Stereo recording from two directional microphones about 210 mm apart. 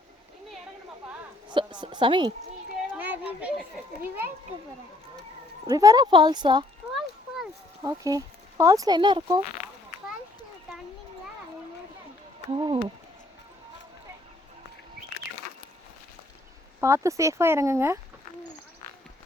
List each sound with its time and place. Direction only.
1.5 s a woman's voice: 20° right (ahead or behind)
3.0 s children playing: 5° right (ahead or behind)
5.6 s speech: 15° right (ahead or behind)
6.9 s a sound: centre (ahead or behind)
7.8 s speech: 15° right (ahead or behind)
12.5 s speech: 25° right (ahead or behind)
16.8 s speech: 15° right (ahead or behind)